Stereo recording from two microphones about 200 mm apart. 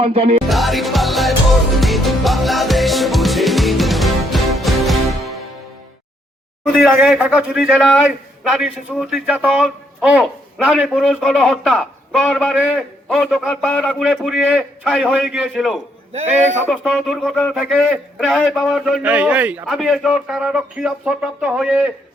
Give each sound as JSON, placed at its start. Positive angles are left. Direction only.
{"t": 0.0, "sound": "music", "side_deg": -30}
{"t": 0.4, "sound": "a man's voice", "side_deg": 0}
{"t": 1.8, "sound": "music", "side_deg": 0}
{"t": 6.9, "sound": "a man's voice", "side_deg": -5}